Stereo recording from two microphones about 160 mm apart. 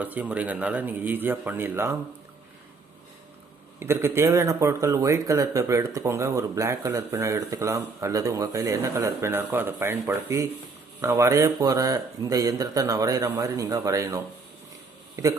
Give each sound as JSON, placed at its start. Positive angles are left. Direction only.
{"t": 0.0, "sound": "a man's voice", "side_deg": -10}
{"t": 3.8, "sound": "a man's voice", "side_deg": -15}